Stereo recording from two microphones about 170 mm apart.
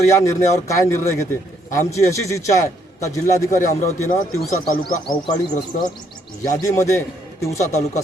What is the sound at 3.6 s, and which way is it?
Speech, 45° left (ahead or behind).